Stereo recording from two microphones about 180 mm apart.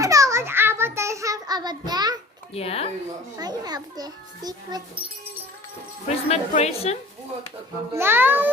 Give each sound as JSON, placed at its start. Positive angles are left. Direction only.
{"t": 0.0, "sound": "a sound", "side_deg": -20}
{"t": 2.5, "sound": "a woman's voice", "side_deg": 35}
{"t": 3.3, "sound": "a child's voice", "side_deg": -20}
{"t": 6.1, "sound": "a woman's voice", "side_deg": 35}
{"t": 7.9, "sound": "a child's voice", "side_deg": -10}